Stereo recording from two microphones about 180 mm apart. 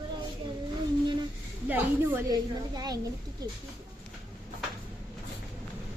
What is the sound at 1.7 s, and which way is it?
A woman's voice, 15° right (ahead or behind).